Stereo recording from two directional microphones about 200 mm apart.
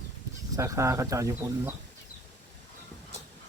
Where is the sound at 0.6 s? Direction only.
15° right (ahead or behind).